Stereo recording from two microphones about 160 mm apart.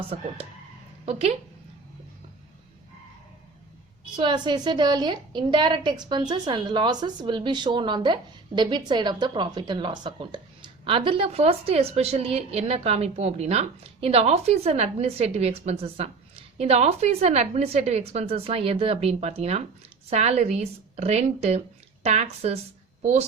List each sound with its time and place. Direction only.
1.0 s a woman's voice: 40° right (ahead or behind)
4.2 s a woman's voice: 30° right (ahead or behind)